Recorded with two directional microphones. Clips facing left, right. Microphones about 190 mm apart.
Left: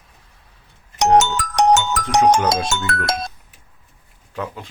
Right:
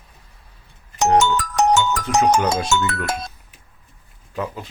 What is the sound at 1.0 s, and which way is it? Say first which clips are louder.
Music: left 1 dB; 90° left.